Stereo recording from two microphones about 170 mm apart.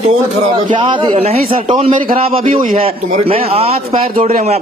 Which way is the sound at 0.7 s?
30° right (ahead or behind).